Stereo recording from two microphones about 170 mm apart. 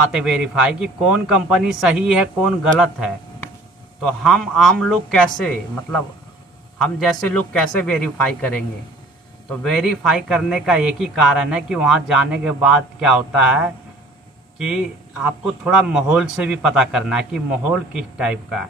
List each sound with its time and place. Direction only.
0.1 s a man's voice: 5° right (ahead or behind)
4.2 s a man's voice: centre (ahead or behind)